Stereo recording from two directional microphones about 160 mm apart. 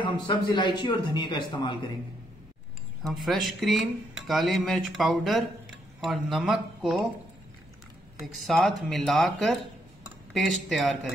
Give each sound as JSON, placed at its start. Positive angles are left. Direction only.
{"t": 0.0, "sound": "a man's voice", "side_deg": 30}
{"t": 3.0, "sound": "speech", "side_deg": 0}
{"t": 8.3, "sound": "speech", "side_deg": 0}